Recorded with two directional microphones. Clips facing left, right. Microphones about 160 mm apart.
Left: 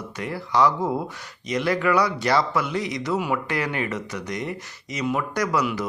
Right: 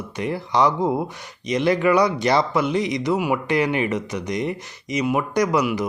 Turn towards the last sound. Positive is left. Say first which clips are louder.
# right 4 dB
turn(degrees=-15)  # may be behind; listen again after turning